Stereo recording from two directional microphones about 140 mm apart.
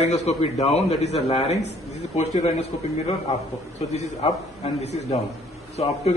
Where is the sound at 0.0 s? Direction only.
55° left (ahead or behind).